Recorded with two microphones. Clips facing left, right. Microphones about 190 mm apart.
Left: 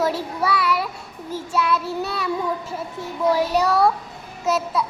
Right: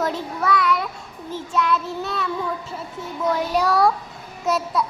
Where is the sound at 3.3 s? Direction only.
5° left (ahead or behind).